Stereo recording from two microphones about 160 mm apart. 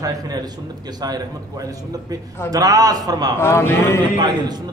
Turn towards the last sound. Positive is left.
turn(degrees=-30)  # may be behind; listen again after turning